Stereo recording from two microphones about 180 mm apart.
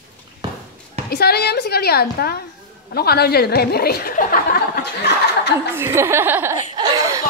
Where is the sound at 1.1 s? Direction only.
60° left (ahead or behind).